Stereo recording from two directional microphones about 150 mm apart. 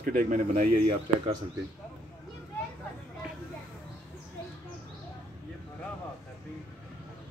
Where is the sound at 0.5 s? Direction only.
40° right (ahead or behind).